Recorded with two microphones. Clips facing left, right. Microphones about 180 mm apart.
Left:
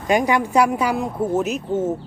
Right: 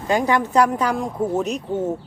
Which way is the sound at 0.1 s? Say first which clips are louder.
Left 1 dB; 15° left (ahead or behind).